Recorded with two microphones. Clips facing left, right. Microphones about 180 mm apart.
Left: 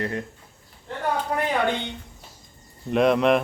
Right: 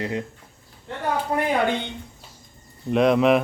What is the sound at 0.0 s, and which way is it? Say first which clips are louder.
Speech: right 1 dB; 15° right (ahead or behind).